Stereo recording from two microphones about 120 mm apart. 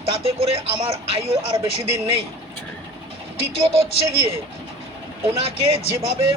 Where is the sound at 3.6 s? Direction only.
55° right (ahead or behind).